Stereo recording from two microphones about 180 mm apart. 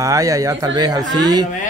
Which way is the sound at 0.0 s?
20° right (ahead or behind).